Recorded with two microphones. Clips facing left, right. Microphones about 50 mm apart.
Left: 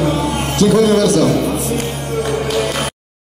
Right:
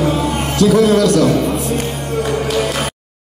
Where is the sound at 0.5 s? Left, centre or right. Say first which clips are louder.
Even; centre.